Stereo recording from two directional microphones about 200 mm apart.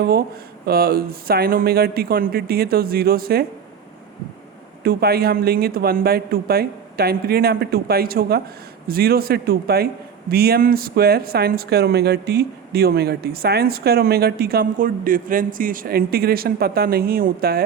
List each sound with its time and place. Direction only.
0.0 s a man's voice: 50° right (ahead or behind)
4.8 s a man's voice: 50° right (ahead or behind)